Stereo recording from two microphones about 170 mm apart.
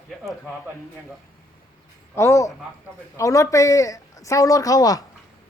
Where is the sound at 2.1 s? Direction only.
15° left (ahead or behind).